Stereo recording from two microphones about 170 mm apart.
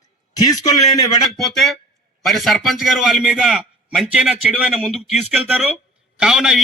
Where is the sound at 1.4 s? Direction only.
Centre (ahead or behind).